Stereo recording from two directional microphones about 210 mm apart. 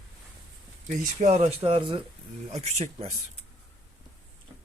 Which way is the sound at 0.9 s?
35° right (ahead or behind).